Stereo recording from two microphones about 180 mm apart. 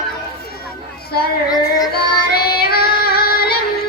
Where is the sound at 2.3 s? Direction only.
60° left (ahead or behind).